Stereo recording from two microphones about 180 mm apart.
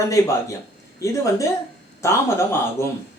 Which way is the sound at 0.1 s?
15° left (ahead or behind).